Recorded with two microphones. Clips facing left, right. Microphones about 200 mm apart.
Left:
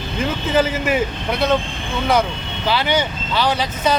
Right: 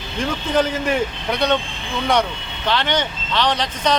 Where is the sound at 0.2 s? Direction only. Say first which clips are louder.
Left 1 dB; 5° left (ahead or behind).